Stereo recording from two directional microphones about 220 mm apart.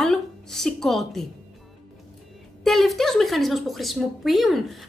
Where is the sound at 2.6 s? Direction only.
Centre (ahead or behind).